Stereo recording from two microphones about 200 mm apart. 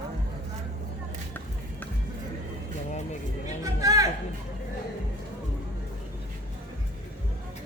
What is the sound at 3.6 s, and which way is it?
Music, 15° right (ahead or behind).